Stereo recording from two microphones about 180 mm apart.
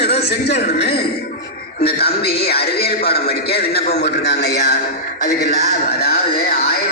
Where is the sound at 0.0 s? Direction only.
65° left (ahead or behind).